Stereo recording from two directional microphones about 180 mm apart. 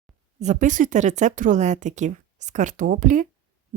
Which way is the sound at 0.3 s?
45° right (ahead or behind).